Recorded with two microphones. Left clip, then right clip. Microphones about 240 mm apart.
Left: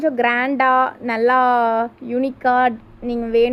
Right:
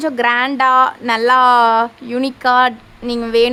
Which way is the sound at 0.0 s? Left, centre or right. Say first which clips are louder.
Right 3 dB; centre.